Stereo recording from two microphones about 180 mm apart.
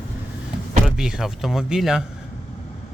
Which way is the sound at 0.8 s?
5° right (ahead or behind).